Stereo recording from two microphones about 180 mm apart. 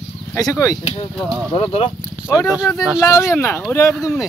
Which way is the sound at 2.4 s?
Centre (ahead or behind).